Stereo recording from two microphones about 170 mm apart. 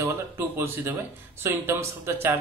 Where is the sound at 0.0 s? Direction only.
15° right (ahead or behind).